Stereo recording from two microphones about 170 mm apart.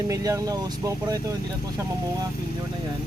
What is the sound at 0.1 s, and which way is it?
Speech, 20° right (ahead or behind).